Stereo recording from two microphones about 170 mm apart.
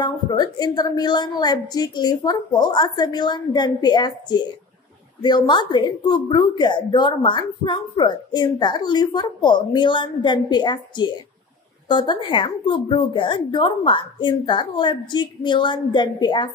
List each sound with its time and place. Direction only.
0.0 s a woman's voice: 25° left (ahead or behind)